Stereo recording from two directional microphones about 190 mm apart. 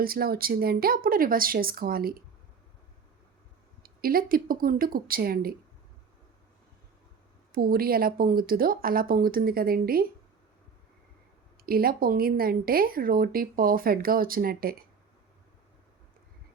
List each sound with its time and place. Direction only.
0.0 s speech: 50° right (ahead or behind)
3.8 s speech: 50° right (ahead or behind)
7.5 s speech: 50° right (ahead or behind)
11.6 s speech: 50° right (ahead or behind)